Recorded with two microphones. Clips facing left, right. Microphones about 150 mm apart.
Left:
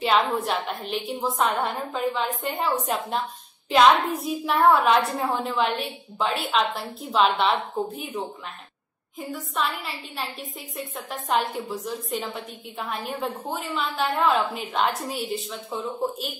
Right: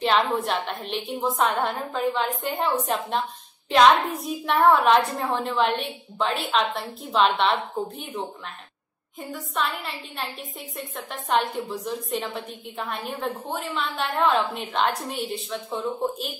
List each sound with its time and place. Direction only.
0.0 s a woman's voice: centre (ahead or behind)
9.8 s a woman's voice: centre (ahead or behind)